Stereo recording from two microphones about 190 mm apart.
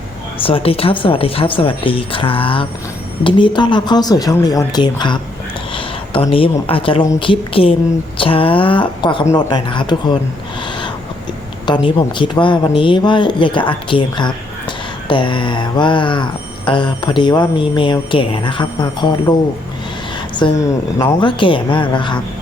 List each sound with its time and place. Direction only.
0.4 s speech: 30° left (ahead or behind)
11.9 s speech: 25° left (ahead or behind)
20.3 s speech: 25° left (ahead or behind)